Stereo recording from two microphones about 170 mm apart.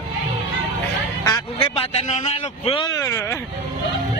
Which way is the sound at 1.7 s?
40° left (ahead or behind).